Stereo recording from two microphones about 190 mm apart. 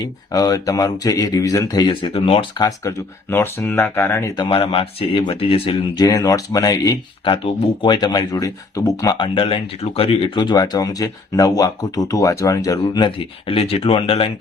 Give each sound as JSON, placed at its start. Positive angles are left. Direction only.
{"t": 0.0, "sound": "speech", "side_deg": 20}
{"t": 4.4, "sound": "speech", "side_deg": 30}